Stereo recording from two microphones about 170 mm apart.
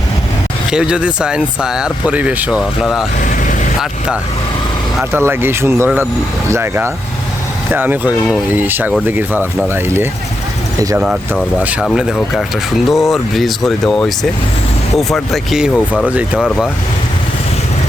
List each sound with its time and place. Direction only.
0.7 s speech: 5° right (ahead or behind)
3.2 s vehicle: 50° left (ahead or behind)
3.8 s speech: 5° right (ahead or behind)